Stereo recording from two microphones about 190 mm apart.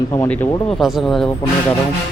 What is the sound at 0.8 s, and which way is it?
Speech, centre (ahead or behind).